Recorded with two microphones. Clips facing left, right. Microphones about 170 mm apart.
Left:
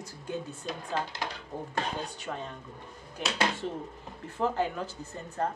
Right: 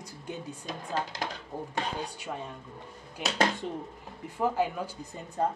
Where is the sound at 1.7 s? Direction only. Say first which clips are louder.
Even; 10° right (ahead or behind).